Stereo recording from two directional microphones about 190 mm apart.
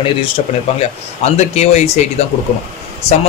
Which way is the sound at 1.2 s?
35° left (ahead or behind).